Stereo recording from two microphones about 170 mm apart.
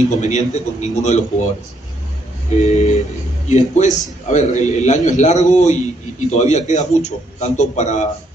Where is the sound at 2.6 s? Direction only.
45° left (ahead or behind).